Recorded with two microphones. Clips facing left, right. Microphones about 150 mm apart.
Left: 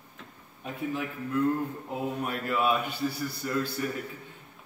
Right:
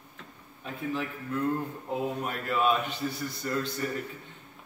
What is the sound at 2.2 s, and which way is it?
Mantra, 5° left (ahead or behind).